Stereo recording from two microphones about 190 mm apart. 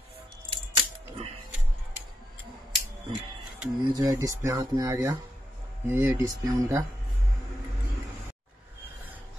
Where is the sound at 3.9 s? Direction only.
15° right (ahead or behind).